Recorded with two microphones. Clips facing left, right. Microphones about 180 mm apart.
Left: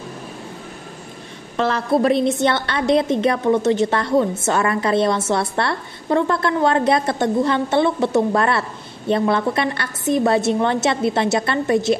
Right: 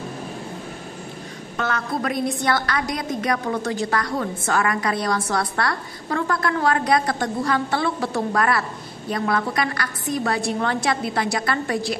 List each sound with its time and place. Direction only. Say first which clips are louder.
1.6 s a woman's voice: left 8 dB; 30° left (ahead or behind)